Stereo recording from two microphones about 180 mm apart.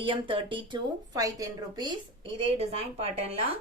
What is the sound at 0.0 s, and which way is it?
Speech, 30° right (ahead or behind).